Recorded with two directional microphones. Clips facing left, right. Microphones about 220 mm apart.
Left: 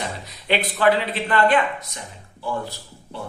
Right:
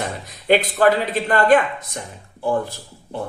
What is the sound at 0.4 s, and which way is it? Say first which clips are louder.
A man's voice: right 4 dB; 45° right (ahead or behind).